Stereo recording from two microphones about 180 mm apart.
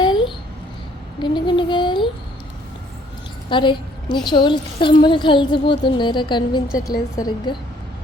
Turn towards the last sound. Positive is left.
turn(degrees=25)  # may be behind; listen again after turning